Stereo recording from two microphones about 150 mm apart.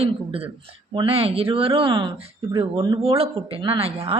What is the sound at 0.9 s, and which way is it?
A woman's voice, 40° right (ahead or behind).